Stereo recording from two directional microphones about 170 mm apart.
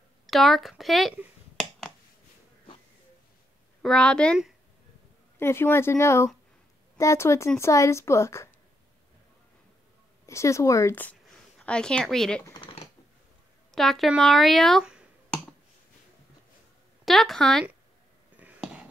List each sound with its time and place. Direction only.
0.3 s speech: centre (ahead or behind)
3.8 s speech: 5° left (ahead or behind)
5.4 s speech: 15° left (ahead or behind)
10.2 s speech: 15° left (ahead or behind)
12.4 s typing: 30° left (ahead or behind)
13.7 s speech: centre (ahead or behind)
17.0 s speech: centre (ahead or behind)
18.3 s a sound: 5° right (ahead or behind)